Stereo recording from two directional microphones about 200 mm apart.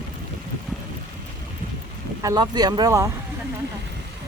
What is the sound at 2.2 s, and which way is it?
Speech, 20° right (ahead or behind).